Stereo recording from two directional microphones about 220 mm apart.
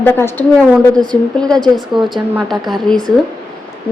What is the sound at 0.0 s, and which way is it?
A woman's voice, 10° left (ahead or behind).